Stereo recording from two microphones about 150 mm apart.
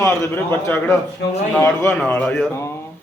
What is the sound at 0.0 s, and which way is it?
A man's voice, 20° left (ahead or behind).